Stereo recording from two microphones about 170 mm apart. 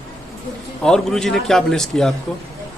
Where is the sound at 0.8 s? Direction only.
Centre (ahead or behind).